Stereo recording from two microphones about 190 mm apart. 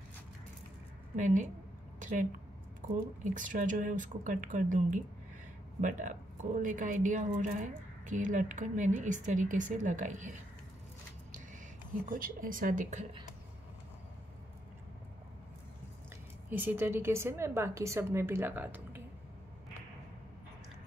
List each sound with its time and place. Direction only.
1.1 s a woman's voice: 40° right (ahead or behind)
2.0 s a sound: 40° right (ahead or behind)
3.3 s speech: 45° right (ahead or behind)
12.1 s speech: 45° right (ahead or behind)
16.4 s a woman's voice: 10° right (ahead or behind)